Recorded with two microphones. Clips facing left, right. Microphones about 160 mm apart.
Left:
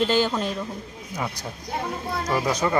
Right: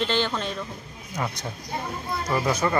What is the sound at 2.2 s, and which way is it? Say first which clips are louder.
Speech: even; 15° left (ahead or behind).